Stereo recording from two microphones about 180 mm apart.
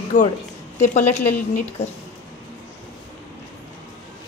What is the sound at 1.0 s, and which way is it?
Speech, 10° left (ahead or behind).